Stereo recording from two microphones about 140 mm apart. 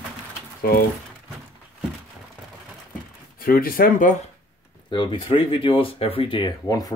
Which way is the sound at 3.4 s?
90° left.